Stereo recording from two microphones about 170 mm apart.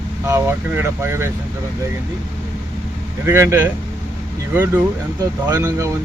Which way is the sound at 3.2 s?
15° right (ahead or behind).